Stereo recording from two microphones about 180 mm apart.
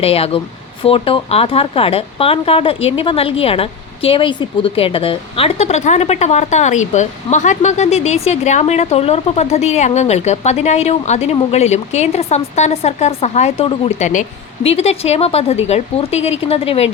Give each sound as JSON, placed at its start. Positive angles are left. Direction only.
{"t": 0.0, "sound": "speech", "side_deg": 30}